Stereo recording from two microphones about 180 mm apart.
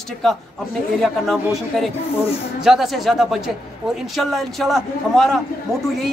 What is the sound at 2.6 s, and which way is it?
A man's voice, centre (ahead or behind).